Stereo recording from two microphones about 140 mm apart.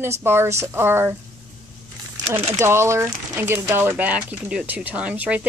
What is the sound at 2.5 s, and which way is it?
Speech, 20° right (ahead or behind).